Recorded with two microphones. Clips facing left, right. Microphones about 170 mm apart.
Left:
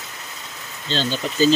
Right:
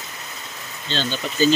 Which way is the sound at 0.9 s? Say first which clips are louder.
Left 2 dB; 35° left (ahead or behind).